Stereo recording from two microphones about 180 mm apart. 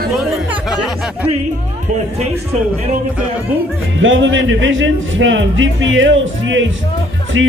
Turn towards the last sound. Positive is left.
turn(degrees=-90)